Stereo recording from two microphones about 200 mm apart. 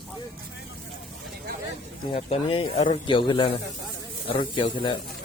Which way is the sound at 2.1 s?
30° left (ahead or behind).